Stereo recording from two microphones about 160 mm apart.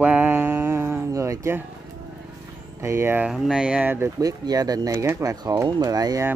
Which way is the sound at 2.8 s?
15° right (ahead or behind).